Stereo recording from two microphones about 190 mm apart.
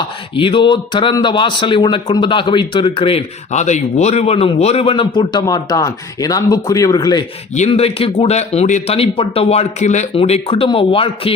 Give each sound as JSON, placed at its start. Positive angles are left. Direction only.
{"t": 0.3, "sound": "speech", "side_deg": 25}
{"t": 7.5, "sound": "speech", "side_deg": 35}